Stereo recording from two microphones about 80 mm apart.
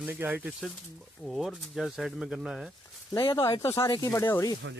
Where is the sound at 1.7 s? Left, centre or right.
Centre.